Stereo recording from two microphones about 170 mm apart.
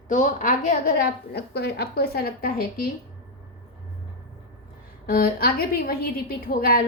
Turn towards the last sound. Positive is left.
turn(degrees=60)  # may be behind; listen again after turning